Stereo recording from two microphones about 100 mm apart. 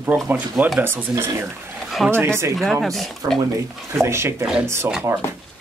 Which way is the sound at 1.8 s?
Centre (ahead or behind).